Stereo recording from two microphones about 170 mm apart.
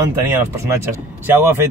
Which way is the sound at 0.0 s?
15° right (ahead or behind).